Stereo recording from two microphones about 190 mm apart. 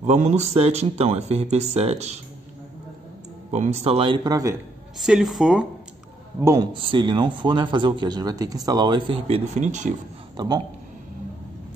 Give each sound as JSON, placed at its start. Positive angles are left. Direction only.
{"t": 0.0, "sound": "speech", "side_deg": -35}
{"t": 3.5, "sound": "a man's voice", "side_deg": -35}
{"t": 4.9, "sound": "speech", "side_deg": 0}
{"t": 6.4, "sound": "a man's voice", "side_deg": -20}
{"t": 10.3, "sound": "speech", "side_deg": -20}